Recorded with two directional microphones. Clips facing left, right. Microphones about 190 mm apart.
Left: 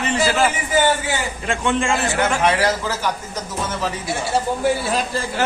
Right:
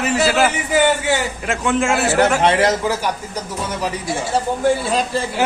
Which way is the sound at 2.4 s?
25° right (ahead or behind).